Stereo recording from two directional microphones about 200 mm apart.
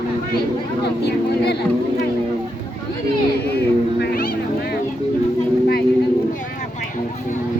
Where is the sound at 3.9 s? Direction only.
50° left (ahead or behind).